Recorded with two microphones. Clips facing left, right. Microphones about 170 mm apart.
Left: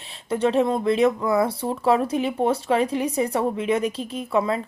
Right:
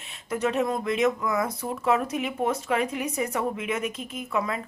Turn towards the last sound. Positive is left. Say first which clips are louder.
# left 6 dB
turn(degrees=30)  # may be behind; listen again after turning